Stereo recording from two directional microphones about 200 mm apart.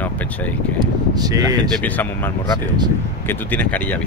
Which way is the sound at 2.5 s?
20° right (ahead or behind).